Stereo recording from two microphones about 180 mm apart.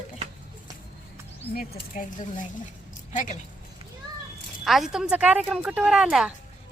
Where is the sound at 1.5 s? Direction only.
55° left (ahead or behind).